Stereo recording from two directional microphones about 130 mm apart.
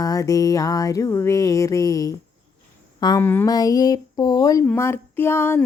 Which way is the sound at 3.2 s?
15° left (ahead or behind).